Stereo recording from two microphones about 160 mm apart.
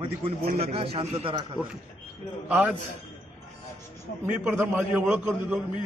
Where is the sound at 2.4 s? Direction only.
10° right (ahead or behind).